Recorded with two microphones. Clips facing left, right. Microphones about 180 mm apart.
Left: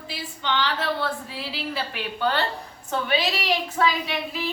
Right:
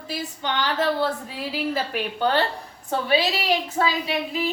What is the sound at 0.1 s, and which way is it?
A woman's voice, 45° right (ahead or behind).